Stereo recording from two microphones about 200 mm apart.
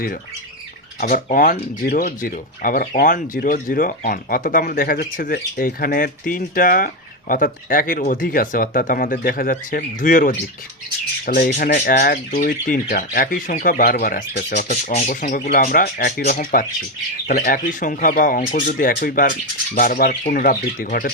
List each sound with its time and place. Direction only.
0.9 s speech: 40° left (ahead or behind)
11.3 s speech: 45° left (ahead or behind)